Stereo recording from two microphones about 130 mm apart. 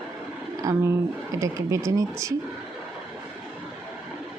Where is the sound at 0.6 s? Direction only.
25° right (ahead or behind).